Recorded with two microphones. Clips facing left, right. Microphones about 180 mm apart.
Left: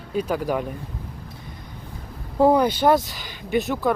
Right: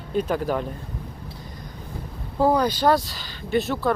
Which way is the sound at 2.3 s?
25° left (ahead or behind).